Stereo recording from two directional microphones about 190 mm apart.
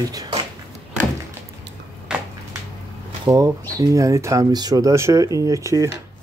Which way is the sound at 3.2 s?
20° right (ahead or behind).